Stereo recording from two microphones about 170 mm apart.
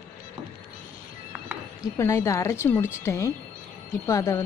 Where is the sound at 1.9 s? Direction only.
20° left (ahead or behind).